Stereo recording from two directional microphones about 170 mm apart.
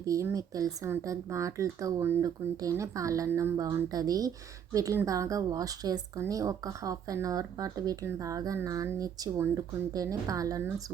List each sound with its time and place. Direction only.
0.0 s a woman's voice: 20° right (ahead or behind)